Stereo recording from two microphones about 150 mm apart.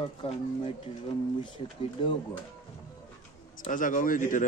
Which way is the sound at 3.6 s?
65° left (ahead or behind).